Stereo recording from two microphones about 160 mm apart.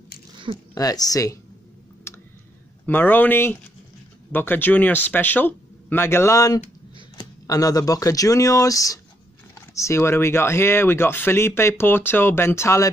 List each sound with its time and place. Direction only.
0.7 s speech: 20° left (ahead or behind)
2.1 s computer keyboard: 15° left (ahead or behind)
2.9 s speech: 10° left (ahead or behind)